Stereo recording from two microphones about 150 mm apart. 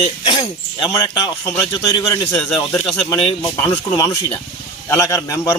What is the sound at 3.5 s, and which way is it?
Speech, 15° left (ahead or behind).